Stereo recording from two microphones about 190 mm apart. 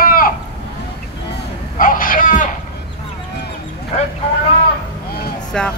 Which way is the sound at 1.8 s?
45° left (ahead or behind).